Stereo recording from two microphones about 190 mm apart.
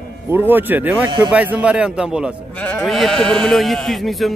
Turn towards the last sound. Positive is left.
turn(degrees=0)  # may be behind; listen again after turning